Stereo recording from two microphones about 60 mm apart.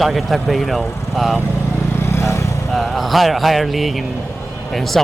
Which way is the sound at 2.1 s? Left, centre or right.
Left.